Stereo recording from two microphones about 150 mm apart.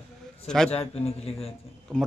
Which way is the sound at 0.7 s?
45° left (ahead or behind).